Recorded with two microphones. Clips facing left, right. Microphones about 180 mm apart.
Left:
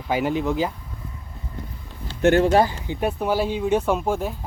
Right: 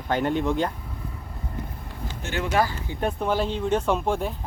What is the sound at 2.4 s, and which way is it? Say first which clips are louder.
Speech: left 4 dB; 35° left (ahead or behind).